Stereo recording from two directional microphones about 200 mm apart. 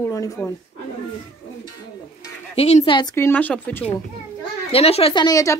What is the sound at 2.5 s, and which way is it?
Speech, 30° left (ahead or behind).